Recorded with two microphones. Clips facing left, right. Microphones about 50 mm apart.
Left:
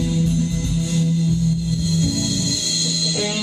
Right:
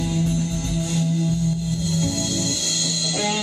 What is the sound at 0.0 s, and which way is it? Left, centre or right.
Music, right.